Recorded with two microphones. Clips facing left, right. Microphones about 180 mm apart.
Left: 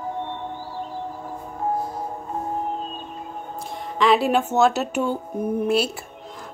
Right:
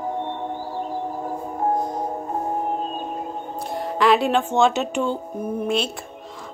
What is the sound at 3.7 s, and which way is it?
Speech, centre (ahead or behind).